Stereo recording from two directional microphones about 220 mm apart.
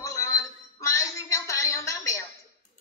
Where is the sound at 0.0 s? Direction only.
15° left (ahead or behind).